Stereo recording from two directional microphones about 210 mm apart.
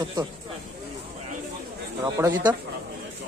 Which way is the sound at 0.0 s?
15° right (ahead or behind).